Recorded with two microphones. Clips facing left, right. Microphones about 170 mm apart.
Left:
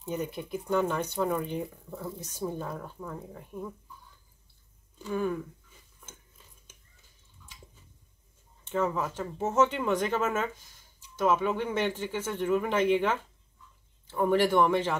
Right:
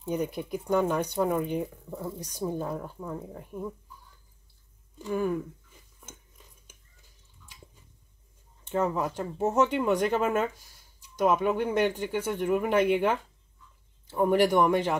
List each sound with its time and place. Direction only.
0.0 s speech: 10° right (ahead or behind)
4.9 s speech: 10° right (ahead or behind)
8.6 s speech: 15° right (ahead or behind)